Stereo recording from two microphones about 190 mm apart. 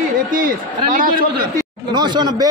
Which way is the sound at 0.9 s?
45° right (ahead or behind).